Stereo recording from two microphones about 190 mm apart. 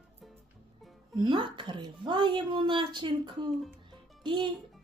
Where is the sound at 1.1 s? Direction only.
25° right (ahead or behind).